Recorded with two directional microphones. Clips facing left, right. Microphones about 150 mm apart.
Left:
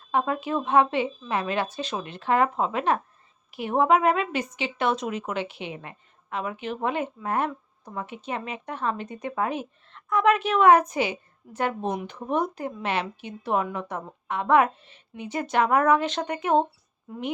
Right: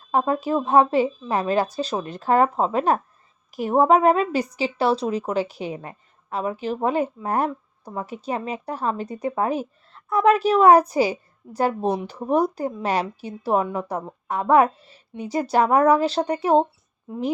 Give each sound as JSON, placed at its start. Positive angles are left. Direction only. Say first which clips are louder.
{"t": 0.1, "sound": "speech", "louder": "right 4 dB", "side_deg": -35}